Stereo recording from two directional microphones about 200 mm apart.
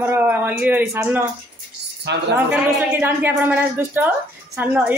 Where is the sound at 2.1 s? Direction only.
60° right (ahead or behind).